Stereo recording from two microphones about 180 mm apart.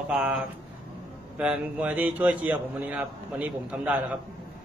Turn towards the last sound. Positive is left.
turn(degrees=-5)  # may be behind; listen again after turning